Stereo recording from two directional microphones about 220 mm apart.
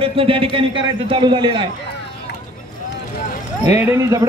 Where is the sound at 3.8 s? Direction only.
10° right (ahead or behind).